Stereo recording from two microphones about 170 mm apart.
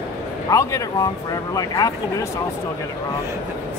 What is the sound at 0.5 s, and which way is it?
Speech, 20° left (ahead or behind).